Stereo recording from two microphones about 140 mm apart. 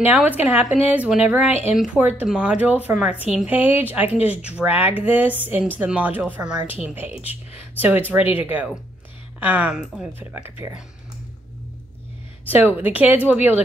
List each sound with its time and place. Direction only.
0.0 s a woman's voice: 10° right (ahead or behind)
9.4 s a woman's voice: 10° right (ahead or behind)
12.4 s a woman's voice: 15° right (ahead or behind)